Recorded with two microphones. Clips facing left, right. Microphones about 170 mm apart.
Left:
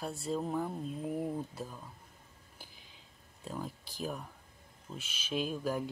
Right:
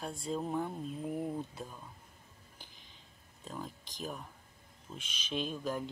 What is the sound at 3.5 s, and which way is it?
Speech, 10° left (ahead or behind).